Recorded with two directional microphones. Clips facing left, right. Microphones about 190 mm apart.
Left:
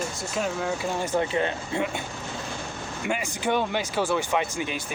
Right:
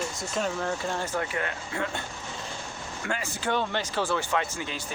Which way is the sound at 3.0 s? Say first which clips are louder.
Left 4 dB; 15° left (ahead or behind).